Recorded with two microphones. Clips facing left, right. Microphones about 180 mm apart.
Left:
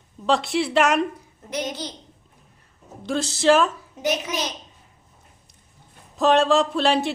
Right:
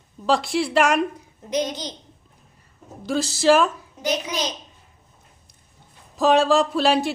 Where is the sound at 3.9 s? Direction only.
20° left (ahead or behind).